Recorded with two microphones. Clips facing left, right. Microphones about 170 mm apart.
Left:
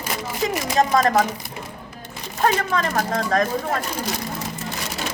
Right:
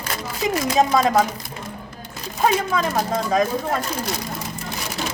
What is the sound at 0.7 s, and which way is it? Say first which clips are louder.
Speech: even; 5° right (ahead or behind).